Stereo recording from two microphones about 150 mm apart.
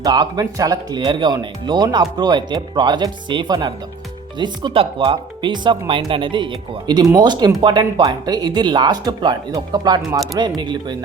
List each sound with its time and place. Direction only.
0.0 s speech: 25° right (ahead or behind)